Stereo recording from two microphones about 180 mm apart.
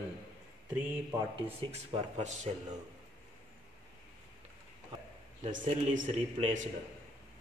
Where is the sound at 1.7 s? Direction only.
35° right (ahead or behind).